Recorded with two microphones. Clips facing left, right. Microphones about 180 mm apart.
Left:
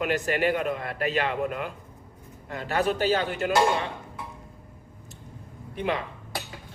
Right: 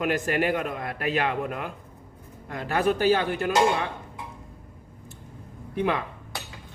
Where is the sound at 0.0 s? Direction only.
45° right (ahead or behind).